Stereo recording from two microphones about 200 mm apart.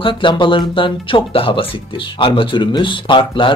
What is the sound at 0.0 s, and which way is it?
Speech, 25° left (ahead or behind).